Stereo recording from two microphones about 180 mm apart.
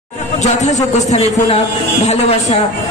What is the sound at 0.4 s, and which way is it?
A man's voice, 40° left (ahead or behind).